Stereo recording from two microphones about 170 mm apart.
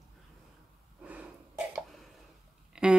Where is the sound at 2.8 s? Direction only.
5° right (ahead or behind).